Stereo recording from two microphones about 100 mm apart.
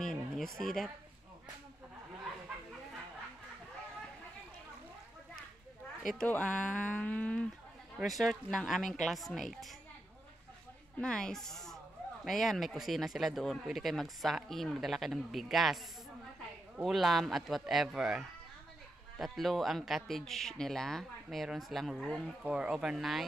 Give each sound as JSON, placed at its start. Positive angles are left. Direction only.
{"t": 0.0, "sound": "a sound", "side_deg": 5}
{"t": 6.1, "sound": "speech", "side_deg": 10}
{"t": 8.0, "sound": "speech", "side_deg": 0}
{"t": 11.0, "sound": "speech", "side_deg": 10}
{"t": 16.8, "sound": "speech", "side_deg": 0}
{"t": 22.4, "sound": "speech", "side_deg": -10}